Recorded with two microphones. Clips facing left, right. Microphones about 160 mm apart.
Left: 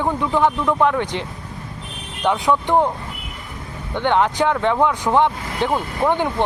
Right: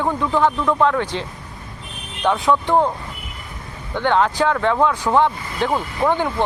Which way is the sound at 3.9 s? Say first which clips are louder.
Even; 20° left (ahead or behind).